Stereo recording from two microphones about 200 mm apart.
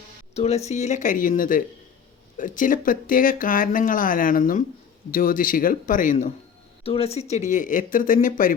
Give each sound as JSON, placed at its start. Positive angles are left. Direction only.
{"t": 0.3, "sound": "speech", "side_deg": 30}
{"t": 6.8, "sound": "speech", "side_deg": 30}